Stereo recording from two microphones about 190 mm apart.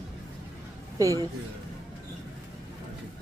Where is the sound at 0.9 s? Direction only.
15° right (ahead or behind).